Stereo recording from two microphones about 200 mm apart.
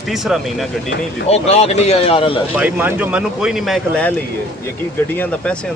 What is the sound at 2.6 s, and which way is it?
Speech, 10° right (ahead or behind).